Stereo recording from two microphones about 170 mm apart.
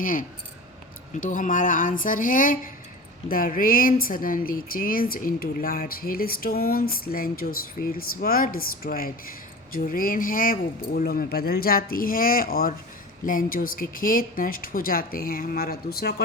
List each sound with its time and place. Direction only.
0.0 s speech: 55° left (ahead or behind)